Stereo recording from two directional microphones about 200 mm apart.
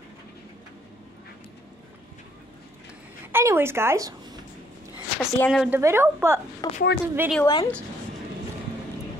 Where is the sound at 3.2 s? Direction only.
10° right (ahead or behind).